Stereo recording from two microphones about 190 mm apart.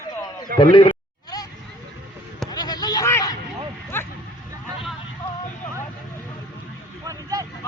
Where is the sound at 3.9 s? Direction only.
10° left (ahead or behind).